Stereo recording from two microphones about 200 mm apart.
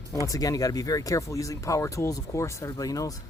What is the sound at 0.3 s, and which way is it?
Speech, 15° left (ahead or behind).